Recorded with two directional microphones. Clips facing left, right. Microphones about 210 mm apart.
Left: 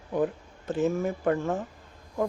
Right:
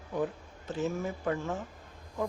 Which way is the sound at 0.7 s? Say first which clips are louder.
Left 6 dB; 50° left (ahead or behind).